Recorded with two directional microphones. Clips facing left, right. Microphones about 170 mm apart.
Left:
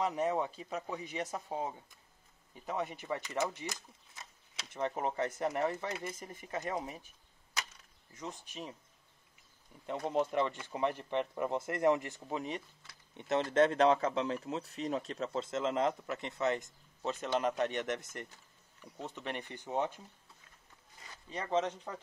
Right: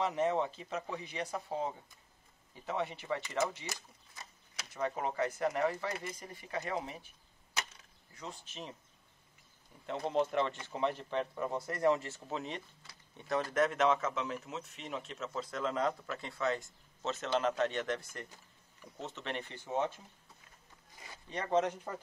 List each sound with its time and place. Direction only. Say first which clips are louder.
0.0 s speech: right 1 dB; 15° left (ahead or behind)
4.7 s speech: even; 25° left (ahead or behind)
8.1 s speech: left 2 dB; 20° left (ahead or behind)
9.8 s speech: even; 10° left (ahead or behind)
13.2 s speech: left 3 dB; 20° left (ahead or behind)
21.3 s speech: right 2 dB; centre (ahead or behind)